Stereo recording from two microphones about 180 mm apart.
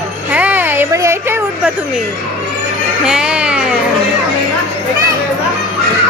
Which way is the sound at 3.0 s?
5° right (ahead or behind).